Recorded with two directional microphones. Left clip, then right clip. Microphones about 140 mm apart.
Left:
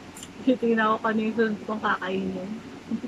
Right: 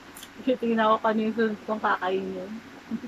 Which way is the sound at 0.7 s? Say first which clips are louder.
Right 1 dB; centre (ahead or behind).